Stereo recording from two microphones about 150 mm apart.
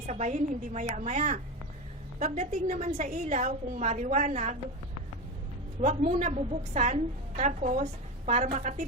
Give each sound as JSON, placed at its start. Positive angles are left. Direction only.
{"t": 0.0, "sound": "a woman's voice", "side_deg": -50}
{"t": 5.8, "sound": "a woman's voice", "side_deg": -50}